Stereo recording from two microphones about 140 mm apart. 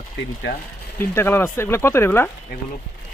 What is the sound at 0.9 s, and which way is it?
Speech, 15° left (ahead or behind).